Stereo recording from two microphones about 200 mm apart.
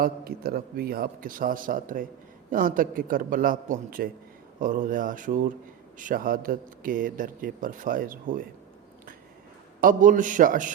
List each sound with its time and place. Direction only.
0.0 s a man's voice: 50° right (ahead or behind)
9.8 s a man's voice: 40° right (ahead or behind)